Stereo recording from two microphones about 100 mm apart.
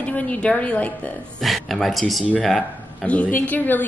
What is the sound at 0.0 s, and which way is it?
Speech, 15° left (ahead or behind).